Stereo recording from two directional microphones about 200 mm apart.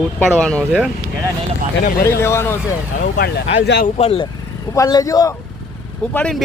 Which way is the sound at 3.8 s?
30° left (ahead or behind).